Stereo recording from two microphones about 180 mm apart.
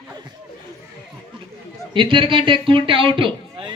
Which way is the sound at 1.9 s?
30° right (ahead or behind).